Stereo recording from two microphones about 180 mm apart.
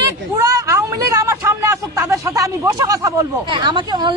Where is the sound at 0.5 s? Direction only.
20° right (ahead or behind).